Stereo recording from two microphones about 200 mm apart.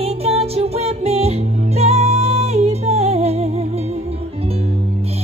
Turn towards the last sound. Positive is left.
turn(degrees=-30)  # may be behind; listen again after turning